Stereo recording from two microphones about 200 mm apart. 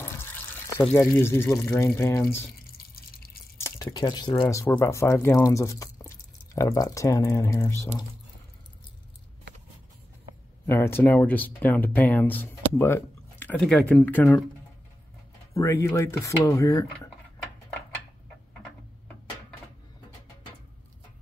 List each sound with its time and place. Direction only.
0.0 s water: 10° left (ahead or behind)
0.7 s speech: 10° left (ahead or behind)
2.6 s drip: 50° left (ahead or behind)
3.5 s speech: 15° left (ahead or behind)
10.7 s speech: 10° left (ahead or behind)
15.5 s speech: 15° left (ahead or behind)